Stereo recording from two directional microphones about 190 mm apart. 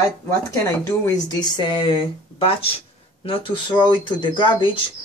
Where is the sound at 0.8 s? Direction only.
20° left (ahead or behind).